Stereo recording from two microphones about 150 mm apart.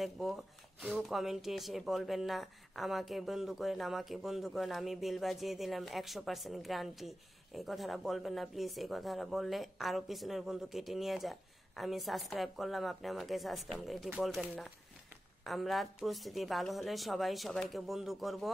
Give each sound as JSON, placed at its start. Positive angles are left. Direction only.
{"t": 0.0, "sound": "speech", "side_deg": 0}